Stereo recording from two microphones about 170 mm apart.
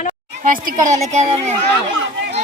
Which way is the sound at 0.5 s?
50° right (ahead or behind).